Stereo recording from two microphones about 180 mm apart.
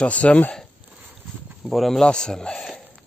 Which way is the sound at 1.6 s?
Centre (ahead or behind).